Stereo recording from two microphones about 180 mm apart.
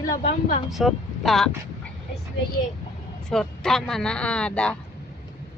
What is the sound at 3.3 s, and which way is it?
Speech, 5° left (ahead or behind).